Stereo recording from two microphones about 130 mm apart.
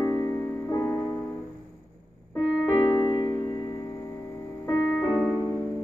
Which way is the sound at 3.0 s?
25° left (ahead or behind).